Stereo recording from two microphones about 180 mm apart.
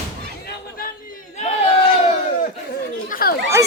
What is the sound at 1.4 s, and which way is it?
Crowd, 35° left (ahead or behind).